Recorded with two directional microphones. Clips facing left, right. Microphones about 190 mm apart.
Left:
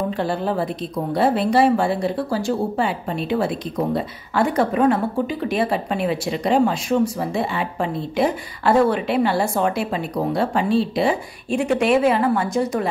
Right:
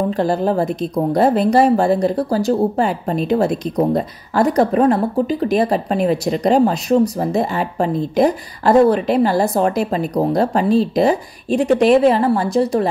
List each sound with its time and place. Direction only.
0.1 s a woman's voice: 40° right (ahead or behind)